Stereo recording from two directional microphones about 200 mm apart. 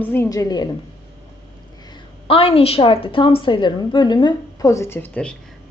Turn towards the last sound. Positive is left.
turn(degrees=5)  # may be behind; listen again after turning